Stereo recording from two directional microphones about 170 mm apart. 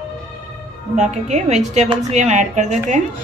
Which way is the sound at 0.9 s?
45° right (ahead or behind).